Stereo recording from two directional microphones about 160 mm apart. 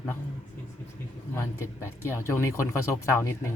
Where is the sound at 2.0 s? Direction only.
15° left (ahead or behind).